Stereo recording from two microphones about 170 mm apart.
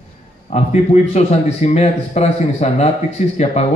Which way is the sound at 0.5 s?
40° left (ahead or behind).